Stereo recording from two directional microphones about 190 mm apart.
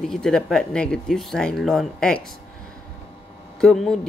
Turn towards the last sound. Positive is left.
turn(degrees=0)  # may be behind; listen again after turning